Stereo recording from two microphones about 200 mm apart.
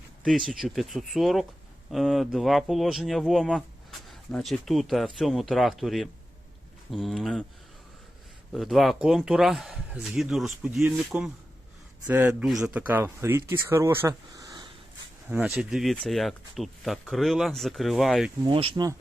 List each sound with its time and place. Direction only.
0.2 s speech: centre (ahead or behind)
8.5 s speech: centre (ahead or behind); by 14.7 s 20° right (ahead or behind)
15.3 s speech: 5° right (ahead or behind)
18.4 s speech: 25° right (ahead or behind)